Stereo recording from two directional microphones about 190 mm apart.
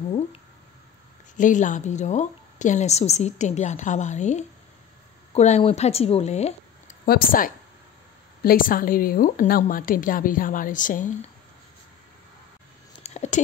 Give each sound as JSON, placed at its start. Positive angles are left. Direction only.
{"t": 1.3, "sound": "a woman's voice", "side_deg": 40}
{"t": 7.1, "sound": "a woman's voice", "side_deg": 50}
{"t": 13.0, "sound": "a sound", "side_deg": 35}